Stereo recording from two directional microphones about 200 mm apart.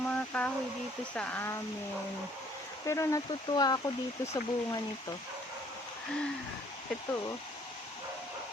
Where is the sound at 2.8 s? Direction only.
15° left (ahead or behind).